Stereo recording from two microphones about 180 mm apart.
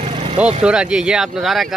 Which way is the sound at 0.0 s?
35° right (ahead or behind).